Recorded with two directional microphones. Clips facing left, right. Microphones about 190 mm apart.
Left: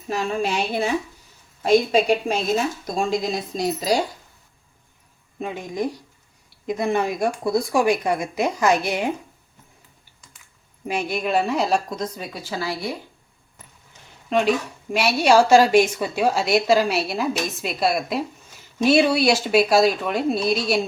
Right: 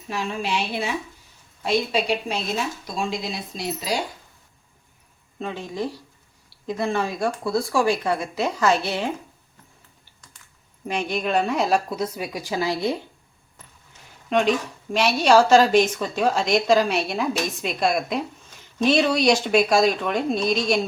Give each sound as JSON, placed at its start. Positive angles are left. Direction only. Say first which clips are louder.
{"t": 0.1, "sound": "a woman's voice", "louder": "left 3 dB", "side_deg": 45}
{"t": 5.4, "sound": "a woman's voice", "louder": "left 2 dB", "side_deg": 15}
{"t": 10.8, "sound": "a woman's voice", "louder": "left 1 dB", "side_deg": 5}
{"t": 14.3, "sound": "a woman's voice", "louder": "left 1 dB", "side_deg": 5}